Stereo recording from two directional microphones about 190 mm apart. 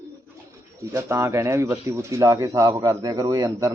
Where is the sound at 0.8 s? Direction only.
15° right (ahead or behind).